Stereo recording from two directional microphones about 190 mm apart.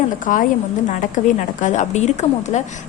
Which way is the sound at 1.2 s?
40° left (ahead or behind).